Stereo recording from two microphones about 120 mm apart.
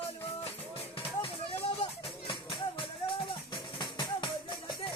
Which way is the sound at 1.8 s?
45° left (ahead or behind).